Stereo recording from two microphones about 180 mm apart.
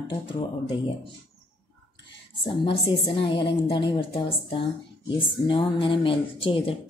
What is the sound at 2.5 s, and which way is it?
A woman's voice, 30° left (ahead or behind).